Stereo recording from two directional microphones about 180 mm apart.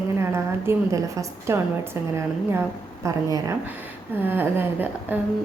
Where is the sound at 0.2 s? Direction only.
15° right (ahead or behind).